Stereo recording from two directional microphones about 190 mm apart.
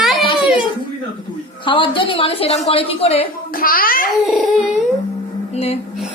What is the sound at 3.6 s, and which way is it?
Speech, 50° left (ahead or behind).